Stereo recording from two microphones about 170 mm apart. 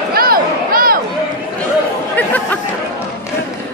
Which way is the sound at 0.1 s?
60° right (ahead or behind).